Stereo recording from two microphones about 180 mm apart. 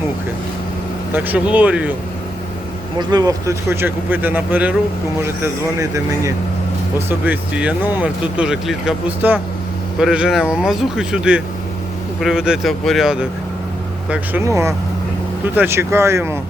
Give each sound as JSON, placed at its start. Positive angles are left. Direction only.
{"t": 1.1, "sound": "speech", "side_deg": -10}
{"t": 3.0, "sound": "speech", "side_deg": -20}
{"t": 14.1, "sound": "speech", "side_deg": -15}